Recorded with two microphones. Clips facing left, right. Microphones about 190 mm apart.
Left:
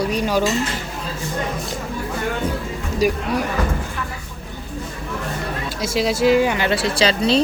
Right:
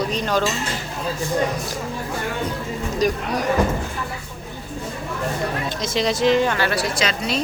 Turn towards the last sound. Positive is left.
turn(degrees=30)  # may be behind; listen again after turning